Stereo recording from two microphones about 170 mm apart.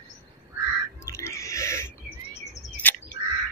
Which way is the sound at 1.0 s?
15° left (ahead or behind).